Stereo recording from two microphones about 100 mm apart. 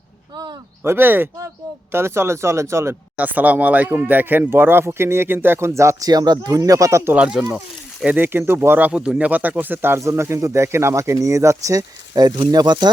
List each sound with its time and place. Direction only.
0.9 s speech: 20° right (ahead or behind)
3.2 s speech: 15° right (ahead or behind); by 7.1 s 30° right (ahead or behind)
7.1 s speech: 10° right (ahead or behind); by 12.9 s 45° right (ahead or behind)